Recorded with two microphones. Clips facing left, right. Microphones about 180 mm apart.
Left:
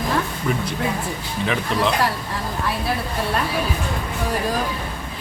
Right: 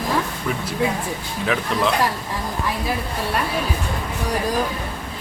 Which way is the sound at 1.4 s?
Centre (ahead or behind).